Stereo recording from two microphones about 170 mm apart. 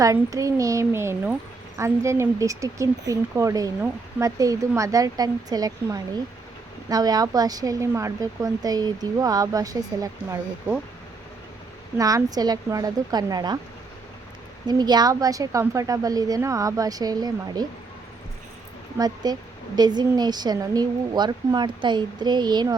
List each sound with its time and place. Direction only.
0.0 s a woman's voice: 20° right (ahead or behind)
11.9 s a woman's voice: 20° right (ahead or behind)
14.7 s a woman's voice: 25° right (ahead or behind)
18.9 s a woman's voice: 25° right (ahead or behind)